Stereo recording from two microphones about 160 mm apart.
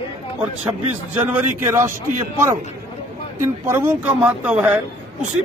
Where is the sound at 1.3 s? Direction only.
15° right (ahead or behind).